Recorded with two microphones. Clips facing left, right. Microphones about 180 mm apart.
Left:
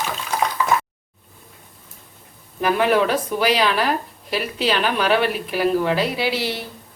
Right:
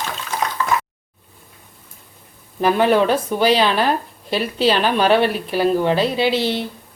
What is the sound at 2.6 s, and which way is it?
A woman's voice, 30° right (ahead or behind).